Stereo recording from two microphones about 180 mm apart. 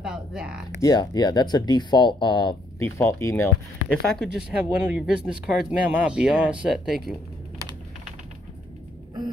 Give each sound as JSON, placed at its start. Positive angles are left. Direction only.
{"t": 0.0, "sound": "speech", "side_deg": -5}
{"t": 0.8, "sound": "speech", "side_deg": 20}
{"t": 3.9, "sound": "speech", "side_deg": 0}